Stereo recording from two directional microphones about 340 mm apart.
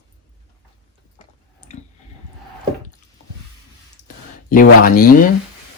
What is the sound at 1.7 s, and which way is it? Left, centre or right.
Squish, centre.